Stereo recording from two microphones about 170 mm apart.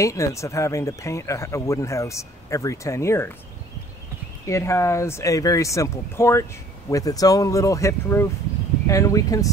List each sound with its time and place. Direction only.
0.0 s speech: 15° left (ahead or behind)
4.5 s speech: 15° left (ahead or behind)